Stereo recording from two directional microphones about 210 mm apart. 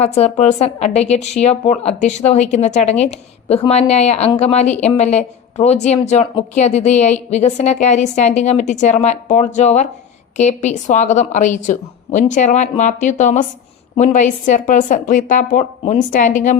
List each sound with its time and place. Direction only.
0.0 s speech: 30° left (ahead or behind)